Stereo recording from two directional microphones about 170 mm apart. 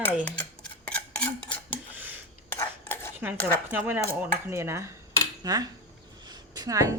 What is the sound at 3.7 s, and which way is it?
Cutlery, 10° right (ahead or behind).